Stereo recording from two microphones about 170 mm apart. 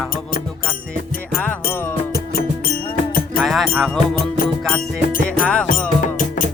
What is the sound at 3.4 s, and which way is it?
Music, centre (ahead or behind).